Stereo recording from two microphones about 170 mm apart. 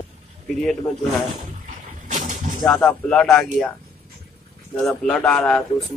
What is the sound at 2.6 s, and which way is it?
Speech, 5° left (ahead or behind).